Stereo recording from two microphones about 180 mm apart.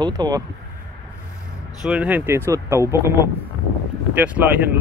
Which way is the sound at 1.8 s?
5° right (ahead or behind).